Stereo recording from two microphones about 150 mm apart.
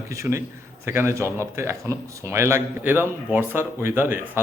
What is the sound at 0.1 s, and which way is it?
A man's voice, 20° right (ahead or behind).